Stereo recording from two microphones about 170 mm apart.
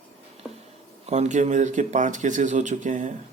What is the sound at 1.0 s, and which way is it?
Speech, 40° right (ahead or behind).